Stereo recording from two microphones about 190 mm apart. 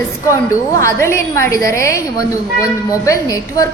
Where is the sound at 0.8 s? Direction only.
15° left (ahead or behind).